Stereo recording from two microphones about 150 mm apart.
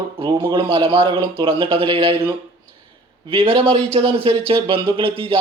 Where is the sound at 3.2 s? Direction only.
35° right (ahead or behind).